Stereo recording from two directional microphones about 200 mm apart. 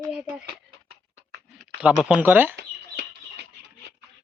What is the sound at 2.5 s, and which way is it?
Chicken, 55° right (ahead or behind).